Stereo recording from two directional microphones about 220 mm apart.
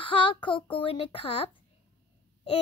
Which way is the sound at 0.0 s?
25° left (ahead or behind).